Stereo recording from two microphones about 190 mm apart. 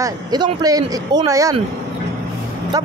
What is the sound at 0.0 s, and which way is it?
Speech, 20° right (ahead or behind).